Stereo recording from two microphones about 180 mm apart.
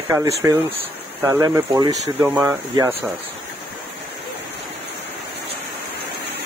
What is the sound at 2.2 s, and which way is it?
Speech, 10° right (ahead or behind).